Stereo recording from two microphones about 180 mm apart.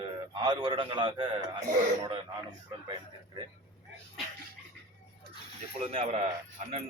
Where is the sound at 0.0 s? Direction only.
25° right (ahead or behind).